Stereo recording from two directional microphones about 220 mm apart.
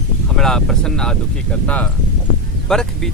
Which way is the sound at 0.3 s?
Centre (ahead or behind).